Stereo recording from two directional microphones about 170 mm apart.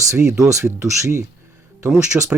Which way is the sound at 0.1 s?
15° right (ahead or behind).